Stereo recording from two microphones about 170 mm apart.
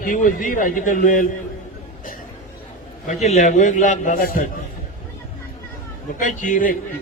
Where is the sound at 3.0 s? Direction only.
40° left (ahead or behind).